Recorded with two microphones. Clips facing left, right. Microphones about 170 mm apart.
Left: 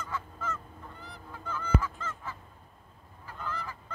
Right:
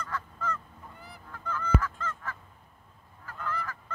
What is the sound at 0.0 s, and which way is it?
Goose, 5° left (ahead or behind).